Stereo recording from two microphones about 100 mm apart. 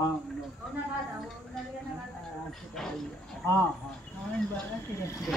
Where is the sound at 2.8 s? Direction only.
5° left (ahead or behind).